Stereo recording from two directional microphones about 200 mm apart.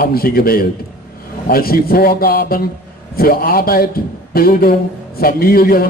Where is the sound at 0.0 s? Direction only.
50° left (ahead or behind).